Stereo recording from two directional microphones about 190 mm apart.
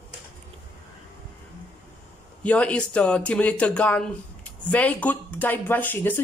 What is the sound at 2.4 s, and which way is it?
Speech, 5° left (ahead or behind).